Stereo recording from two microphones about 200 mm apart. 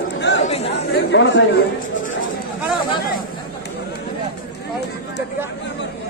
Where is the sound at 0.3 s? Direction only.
60° left (ahead or behind).